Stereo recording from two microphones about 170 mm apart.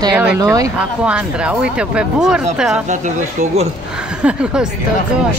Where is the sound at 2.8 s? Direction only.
45° right (ahead or behind).